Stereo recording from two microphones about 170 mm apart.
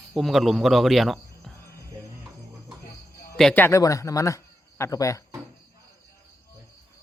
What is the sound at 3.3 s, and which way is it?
Speech, 5° left (ahead or behind).